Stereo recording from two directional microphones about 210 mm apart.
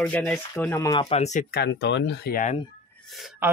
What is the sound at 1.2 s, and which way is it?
Speech, 35° left (ahead or behind).